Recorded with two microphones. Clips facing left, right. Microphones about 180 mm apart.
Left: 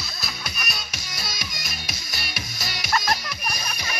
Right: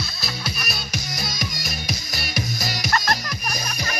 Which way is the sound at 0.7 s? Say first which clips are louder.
Right 6 dB; 40° right (ahead or behind).